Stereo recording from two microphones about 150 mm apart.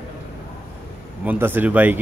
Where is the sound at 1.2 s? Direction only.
10° right (ahead or behind).